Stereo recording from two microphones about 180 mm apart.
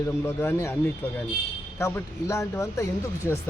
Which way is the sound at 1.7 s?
15° left (ahead or behind).